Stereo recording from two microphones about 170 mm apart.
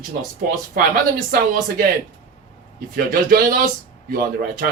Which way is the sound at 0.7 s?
60° right (ahead or behind).